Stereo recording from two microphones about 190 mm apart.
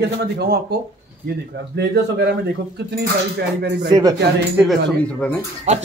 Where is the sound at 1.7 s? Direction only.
60° right (ahead or behind).